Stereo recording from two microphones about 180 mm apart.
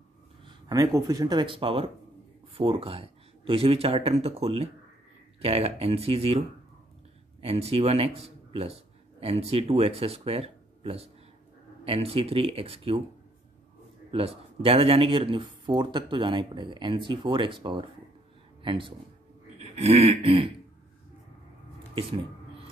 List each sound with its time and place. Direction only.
0.5 s speech: 20° right (ahead or behind)
7.4 s a man's voice: 35° right (ahead or behind)
14.1 s speech: 30° right (ahead or behind)
19.6 s a sound: 35° right (ahead or behind)